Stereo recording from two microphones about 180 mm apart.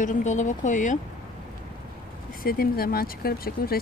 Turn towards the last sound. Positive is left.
turn(degrees=55)  # may be behind; listen again after turning